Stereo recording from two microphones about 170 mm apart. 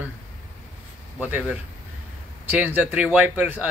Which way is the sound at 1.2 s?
10° right (ahead or behind).